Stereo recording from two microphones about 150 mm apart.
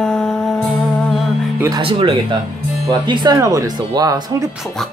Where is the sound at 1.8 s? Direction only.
35° right (ahead or behind).